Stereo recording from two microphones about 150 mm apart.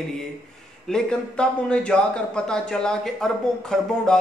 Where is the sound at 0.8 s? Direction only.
5° left (ahead or behind).